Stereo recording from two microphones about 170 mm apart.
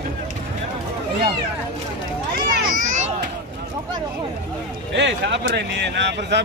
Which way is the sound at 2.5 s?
50° right (ahead or behind).